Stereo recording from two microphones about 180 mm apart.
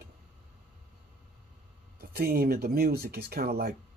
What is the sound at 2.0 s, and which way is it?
Speech, 55° right (ahead or behind).